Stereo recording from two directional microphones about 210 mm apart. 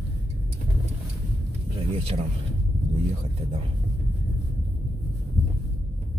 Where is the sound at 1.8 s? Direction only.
30° right (ahead or behind).